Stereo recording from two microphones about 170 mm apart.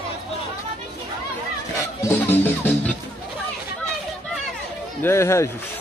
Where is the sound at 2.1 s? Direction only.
10° left (ahead or behind).